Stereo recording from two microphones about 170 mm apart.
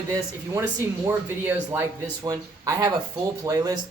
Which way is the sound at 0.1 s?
20° right (ahead or behind).